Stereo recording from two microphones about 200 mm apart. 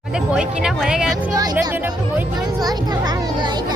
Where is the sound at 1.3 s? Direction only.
20° right (ahead or behind).